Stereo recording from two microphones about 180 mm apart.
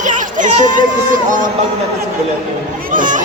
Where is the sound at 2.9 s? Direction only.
45° right (ahead or behind).